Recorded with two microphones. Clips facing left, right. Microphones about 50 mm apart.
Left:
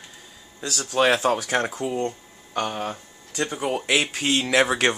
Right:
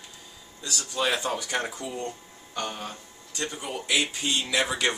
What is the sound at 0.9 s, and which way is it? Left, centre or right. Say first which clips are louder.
Speech: left 8 dB; left.